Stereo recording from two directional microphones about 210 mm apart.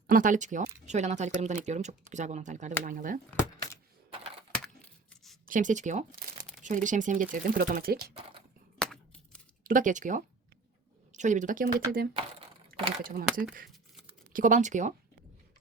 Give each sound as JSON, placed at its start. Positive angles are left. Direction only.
{"t": 0.1, "sound": "speech", "side_deg": -40}
{"t": 5.5, "sound": "speech", "side_deg": -40}
{"t": 8.8, "sound": "a sound", "side_deg": 5}
{"t": 9.6, "sound": "speech", "side_deg": -40}
{"t": 13.7, "sound": "a sound", "side_deg": 0}
{"t": 14.3, "sound": "speech", "side_deg": -40}